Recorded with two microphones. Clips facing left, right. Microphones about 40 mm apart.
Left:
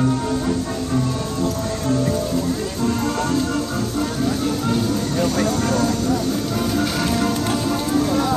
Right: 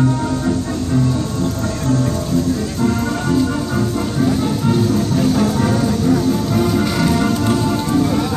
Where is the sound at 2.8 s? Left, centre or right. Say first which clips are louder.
Right 2 dB; centre.